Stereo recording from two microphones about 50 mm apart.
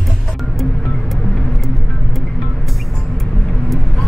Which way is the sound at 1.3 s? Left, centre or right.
Centre.